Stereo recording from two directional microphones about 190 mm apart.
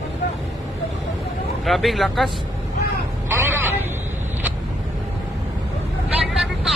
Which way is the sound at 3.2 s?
10° right (ahead or behind).